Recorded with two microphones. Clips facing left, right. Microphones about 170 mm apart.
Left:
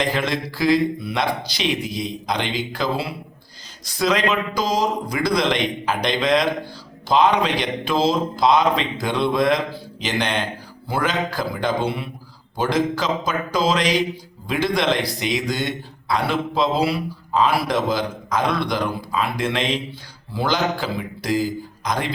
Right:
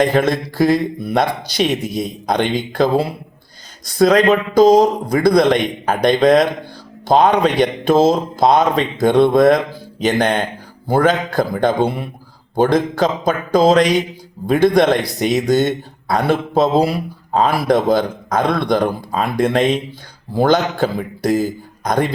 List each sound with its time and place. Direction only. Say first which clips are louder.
0.0 s a man's voice: right 7 dB; 50° right (ahead or behind)